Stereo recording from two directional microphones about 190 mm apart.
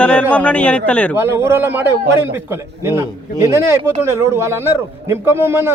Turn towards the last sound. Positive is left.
turn(degrees=-10)  # may be behind; listen again after turning